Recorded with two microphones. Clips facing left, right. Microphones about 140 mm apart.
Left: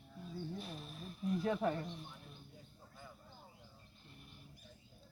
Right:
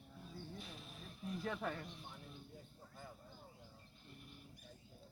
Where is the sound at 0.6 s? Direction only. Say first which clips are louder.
Left 6 dB; 35° left (ahead or behind).